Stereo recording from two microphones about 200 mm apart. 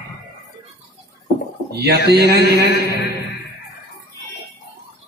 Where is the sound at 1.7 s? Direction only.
55° right (ahead or behind).